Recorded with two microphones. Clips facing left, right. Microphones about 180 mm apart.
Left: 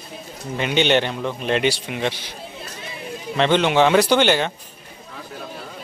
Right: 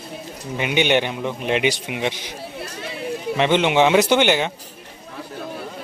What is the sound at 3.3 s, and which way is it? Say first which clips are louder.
Speech: even; 15° right (ahead or behind).